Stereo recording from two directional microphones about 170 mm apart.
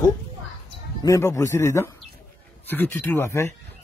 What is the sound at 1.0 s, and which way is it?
A man's voice, 20° left (ahead or behind).